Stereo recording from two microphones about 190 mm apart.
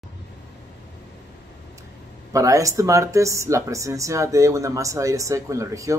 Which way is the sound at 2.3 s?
15° right (ahead or behind).